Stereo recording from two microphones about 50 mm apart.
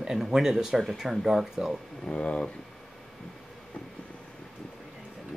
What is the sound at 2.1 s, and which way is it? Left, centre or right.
Speech, left.